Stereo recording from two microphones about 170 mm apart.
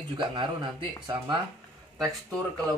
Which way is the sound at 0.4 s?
30° right (ahead or behind).